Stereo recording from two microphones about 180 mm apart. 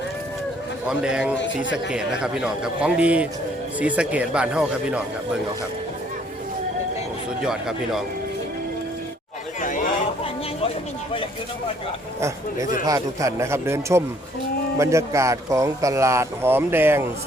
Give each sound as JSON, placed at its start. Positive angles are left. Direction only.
{"t": 0.9, "sound": "a man's voice", "side_deg": -5}
{"t": 9.6, "sound": "a sound", "side_deg": 45}
{"t": 12.8, "sound": "speech", "side_deg": -20}